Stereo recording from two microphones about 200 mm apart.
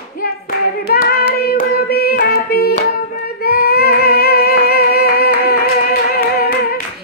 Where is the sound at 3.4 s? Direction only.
50° left (ahead or behind).